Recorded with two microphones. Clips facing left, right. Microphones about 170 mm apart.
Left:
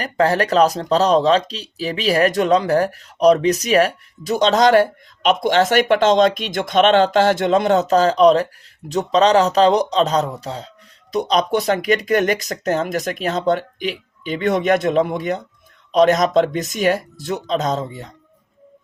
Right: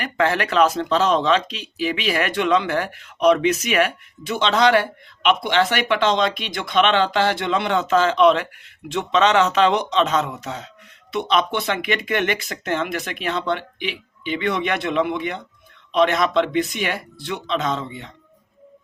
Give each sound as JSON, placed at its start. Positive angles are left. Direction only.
{"t": 0.0, "sound": "speech", "side_deg": 35}